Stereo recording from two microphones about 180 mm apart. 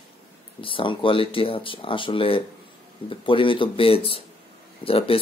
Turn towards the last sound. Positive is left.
turn(degrees=30)  # may be behind; listen again after turning